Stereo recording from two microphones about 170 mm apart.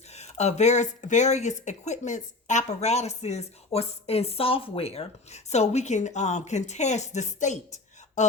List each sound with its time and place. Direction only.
0.1 s speech: 40° left (ahead or behind)